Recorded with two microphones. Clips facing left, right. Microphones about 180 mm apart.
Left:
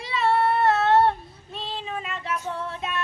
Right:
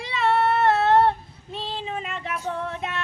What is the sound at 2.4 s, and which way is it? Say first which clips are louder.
Female singing: right 2 dB; 15° right (ahead or behind).